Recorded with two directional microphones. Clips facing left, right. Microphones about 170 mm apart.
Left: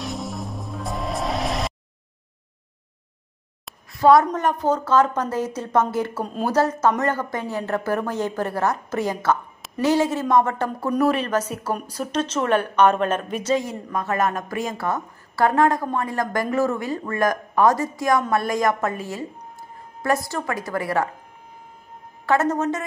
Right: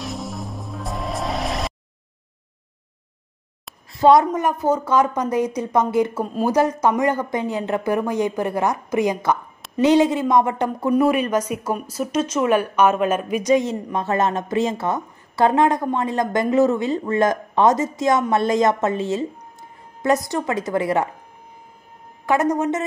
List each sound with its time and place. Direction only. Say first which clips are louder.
0.0 s music: even; centre (ahead or behind)
3.9 s a woman's voice: right 1 dB; 20° right (ahead or behind)
4.3 s a woman's voice: right 1 dB; 10° right (ahead or behind)
22.2 s a woman's voice: right 1 dB; 15° right (ahead or behind)